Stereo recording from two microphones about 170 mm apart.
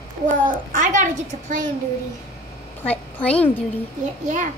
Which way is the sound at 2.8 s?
10° left (ahead or behind).